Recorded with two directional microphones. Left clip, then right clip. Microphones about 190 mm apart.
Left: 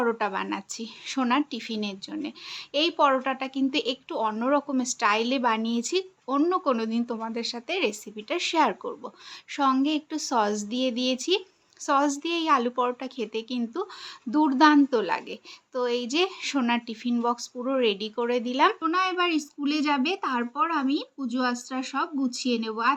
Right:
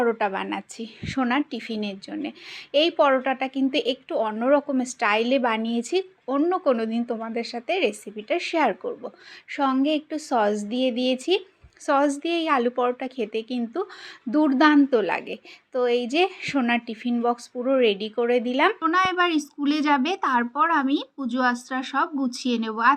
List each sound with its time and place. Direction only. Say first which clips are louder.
0.0 s a woman's voice: right 3 dB; centre (ahead or behind)
18.8 s a woman's voice: right 4 dB; 20° right (ahead or behind)